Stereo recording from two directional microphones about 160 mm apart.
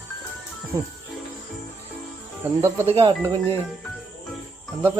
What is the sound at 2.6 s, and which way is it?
Speech, 15° right (ahead or behind).